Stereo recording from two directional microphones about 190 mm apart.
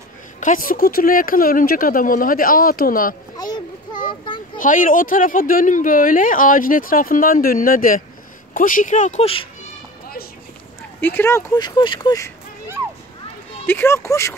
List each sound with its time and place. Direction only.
0.4 s speech: 45° left (ahead or behind)
3.3 s a sound: 20° left (ahead or behind)
4.6 s speech: 45° left (ahead or behind)
11.0 s speech: 10° left (ahead or behind)
13.7 s speech: 10° left (ahead or behind)